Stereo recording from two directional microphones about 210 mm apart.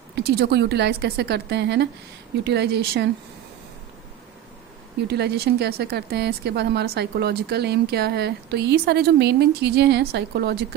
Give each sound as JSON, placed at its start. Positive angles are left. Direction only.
{"t": 0.2, "sound": "a woman's voice", "side_deg": -50}
{"t": 5.0, "sound": "a woman's voice", "side_deg": -50}